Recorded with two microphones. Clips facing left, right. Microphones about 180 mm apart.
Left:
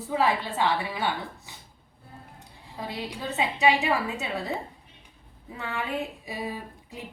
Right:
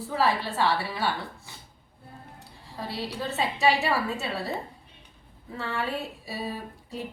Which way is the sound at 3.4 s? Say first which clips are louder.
Left 1 dB; 15° left (ahead or behind).